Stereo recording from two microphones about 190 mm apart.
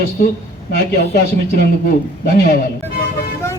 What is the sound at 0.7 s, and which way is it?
Speech, 60° left (ahead or behind).